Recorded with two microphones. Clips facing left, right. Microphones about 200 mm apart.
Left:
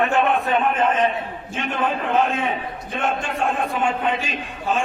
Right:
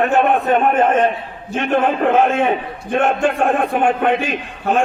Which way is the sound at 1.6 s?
65° right (ahead or behind).